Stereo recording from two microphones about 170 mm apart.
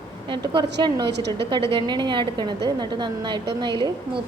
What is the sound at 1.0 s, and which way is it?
Speech, 85° right.